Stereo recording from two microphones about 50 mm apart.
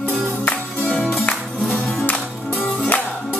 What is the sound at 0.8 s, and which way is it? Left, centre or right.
Music, centre.